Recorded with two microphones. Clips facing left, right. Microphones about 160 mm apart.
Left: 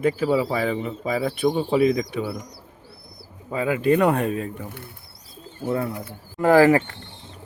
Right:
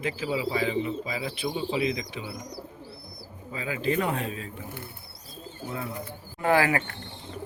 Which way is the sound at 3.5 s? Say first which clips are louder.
Left 8 dB; 55° left (ahead or behind).